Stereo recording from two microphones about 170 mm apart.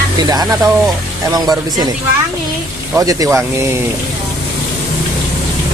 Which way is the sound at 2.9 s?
20° right (ahead or behind).